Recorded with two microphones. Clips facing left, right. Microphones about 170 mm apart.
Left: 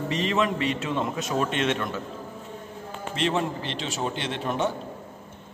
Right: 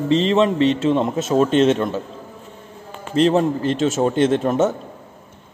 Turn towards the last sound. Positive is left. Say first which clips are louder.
# right 11 dB
turn(degrees=-45)  # may be behind; listen again after turning